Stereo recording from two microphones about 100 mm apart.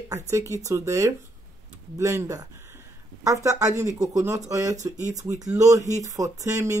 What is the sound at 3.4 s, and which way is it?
Speech, 30° right (ahead or behind).